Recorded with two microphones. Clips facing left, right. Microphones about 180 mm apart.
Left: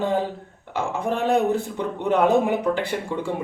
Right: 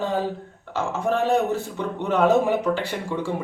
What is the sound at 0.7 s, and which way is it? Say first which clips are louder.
Speech: right 1 dB; 15° left (ahead or behind).